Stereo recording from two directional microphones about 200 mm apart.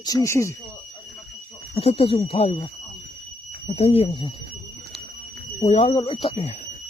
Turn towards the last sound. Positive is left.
turn(degrees=30)  # may be behind; listen again after turning